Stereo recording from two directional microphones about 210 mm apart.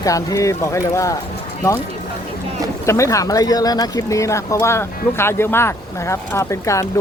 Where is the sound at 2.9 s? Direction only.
15° left (ahead or behind).